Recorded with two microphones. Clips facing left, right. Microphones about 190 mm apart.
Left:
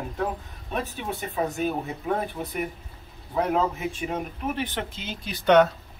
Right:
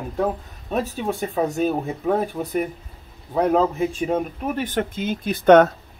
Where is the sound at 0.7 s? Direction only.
40° right (ahead or behind).